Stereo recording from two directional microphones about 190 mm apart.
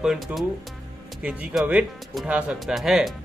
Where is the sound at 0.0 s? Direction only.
Centre (ahead or behind).